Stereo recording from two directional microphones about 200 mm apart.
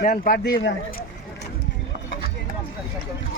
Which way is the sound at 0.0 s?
45° left (ahead or behind).